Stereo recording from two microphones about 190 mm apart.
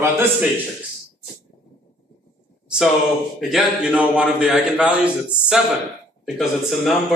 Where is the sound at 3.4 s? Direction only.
Centre (ahead or behind).